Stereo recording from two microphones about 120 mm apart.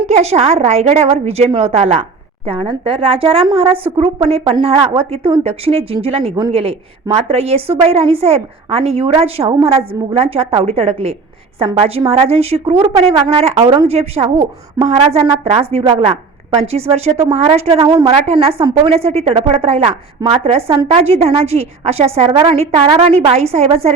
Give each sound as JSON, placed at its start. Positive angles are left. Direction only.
{"t": 0.1, "sound": "a woman's voice", "side_deg": -60}
{"t": 17.3, "sound": "a woman's voice", "side_deg": -55}